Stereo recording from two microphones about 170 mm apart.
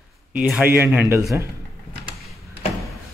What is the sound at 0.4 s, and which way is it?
Speech, 5° right (ahead or behind).